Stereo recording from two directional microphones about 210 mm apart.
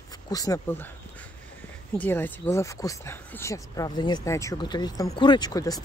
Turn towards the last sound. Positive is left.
turn(degrees=20)  # may be behind; listen again after turning